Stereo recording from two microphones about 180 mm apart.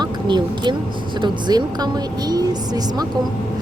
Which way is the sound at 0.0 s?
25° right (ahead or behind).